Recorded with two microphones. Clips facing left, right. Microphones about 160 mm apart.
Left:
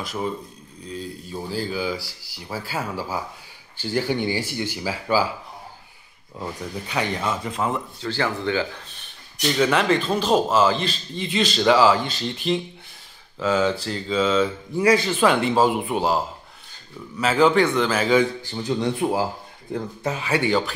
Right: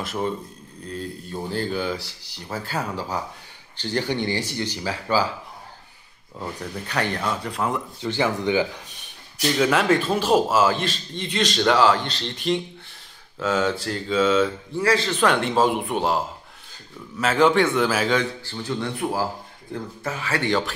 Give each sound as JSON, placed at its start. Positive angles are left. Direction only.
{"t": 0.0, "sound": "a man's voice", "side_deg": 0}
{"t": 4.6, "sound": "speech", "side_deg": 10}
{"t": 6.3, "sound": "a man's voice", "side_deg": 5}
{"t": 8.0, "sound": "speech", "side_deg": -15}
{"t": 9.6, "sound": "a man's voice", "side_deg": -5}
{"t": 14.8, "sound": "a man's voice", "side_deg": 15}
{"t": 18.1, "sound": "speech", "side_deg": 15}